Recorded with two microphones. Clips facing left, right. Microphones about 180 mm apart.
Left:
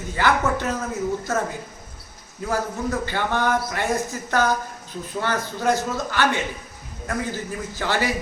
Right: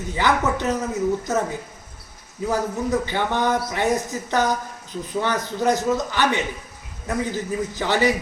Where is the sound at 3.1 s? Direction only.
20° right (ahead or behind).